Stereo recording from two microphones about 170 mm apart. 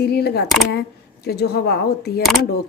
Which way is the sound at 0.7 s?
70° left (ahead or behind).